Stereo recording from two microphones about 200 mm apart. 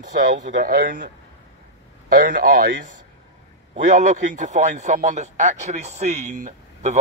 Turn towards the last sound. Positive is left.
turn(degrees=-35)  # may be behind; listen again after turning